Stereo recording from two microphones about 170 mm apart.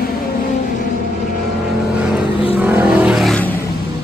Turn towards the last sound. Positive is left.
turn(degrees=0)  # may be behind; listen again after turning